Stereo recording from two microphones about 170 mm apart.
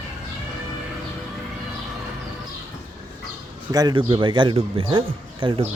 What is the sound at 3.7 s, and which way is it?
Speech, 25° right (ahead or behind).